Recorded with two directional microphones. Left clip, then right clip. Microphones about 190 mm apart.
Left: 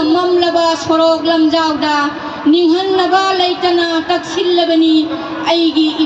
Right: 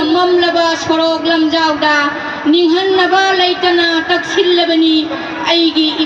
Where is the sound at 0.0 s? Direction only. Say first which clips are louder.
Right 1 dB; 45° left (ahead or behind).